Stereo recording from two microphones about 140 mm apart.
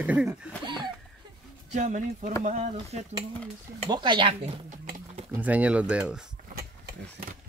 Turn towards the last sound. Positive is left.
turn(degrees=-5)  # may be behind; listen again after turning